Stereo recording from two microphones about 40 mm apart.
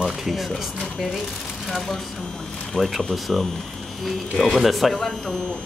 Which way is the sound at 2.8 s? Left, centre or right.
Centre.